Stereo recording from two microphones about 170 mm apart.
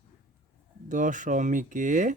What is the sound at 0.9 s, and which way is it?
Speech, 50° right (ahead or behind).